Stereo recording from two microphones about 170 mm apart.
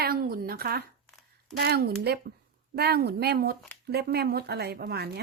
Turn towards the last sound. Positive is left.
turn(degrees=-70)  # may be behind; listen again after turning